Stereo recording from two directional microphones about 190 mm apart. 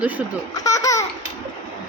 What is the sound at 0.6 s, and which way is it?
Laughter, 15° left (ahead or behind).